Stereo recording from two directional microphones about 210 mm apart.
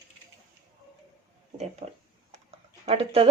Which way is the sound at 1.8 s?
30° right (ahead or behind).